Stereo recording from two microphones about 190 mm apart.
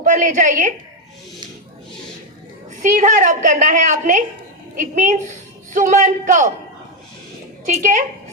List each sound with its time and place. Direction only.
0.0 s a woman's voice: 40° right (ahead or behind)
2.8 s a woman's voice: 40° right (ahead or behind)
7.8 s a woman's voice: 40° right (ahead or behind)